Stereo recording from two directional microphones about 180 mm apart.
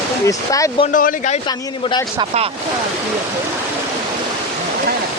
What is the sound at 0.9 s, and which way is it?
Speech, 45° left (ahead or behind).